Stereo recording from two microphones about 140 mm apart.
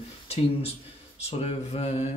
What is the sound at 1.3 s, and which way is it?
Speech, 45° left (ahead or behind).